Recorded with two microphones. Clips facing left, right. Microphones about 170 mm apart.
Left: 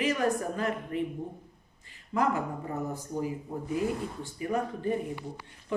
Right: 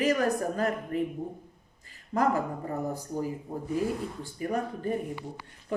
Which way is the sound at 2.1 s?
40° right (ahead or behind).